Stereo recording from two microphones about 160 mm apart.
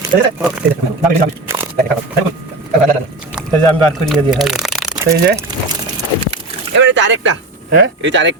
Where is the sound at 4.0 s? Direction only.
Centre (ahead or behind).